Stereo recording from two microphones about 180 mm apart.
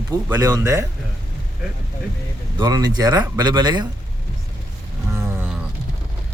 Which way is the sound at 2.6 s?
20° right (ahead or behind).